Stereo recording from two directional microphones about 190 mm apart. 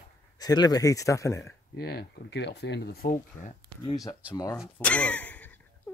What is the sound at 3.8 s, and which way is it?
Speech, 20° left (ahead or behind).